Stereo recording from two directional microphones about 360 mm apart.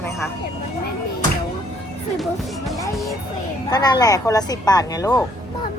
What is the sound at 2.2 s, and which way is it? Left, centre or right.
Music, centre.